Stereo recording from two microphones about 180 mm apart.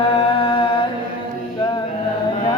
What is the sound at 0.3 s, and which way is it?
Humming, 30° left (ahead or behind).